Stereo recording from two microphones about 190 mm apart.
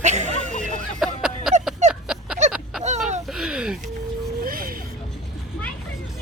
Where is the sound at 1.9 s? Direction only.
5° right (ahead or behind).